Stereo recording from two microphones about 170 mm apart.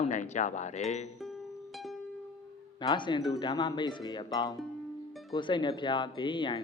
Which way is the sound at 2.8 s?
25° left (ahead or behind).